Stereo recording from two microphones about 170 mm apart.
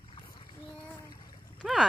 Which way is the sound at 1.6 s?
Centre (ahead or behind).